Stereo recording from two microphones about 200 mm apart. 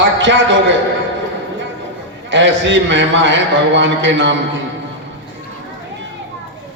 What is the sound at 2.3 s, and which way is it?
A man's voice, 70° right (ahead or behind).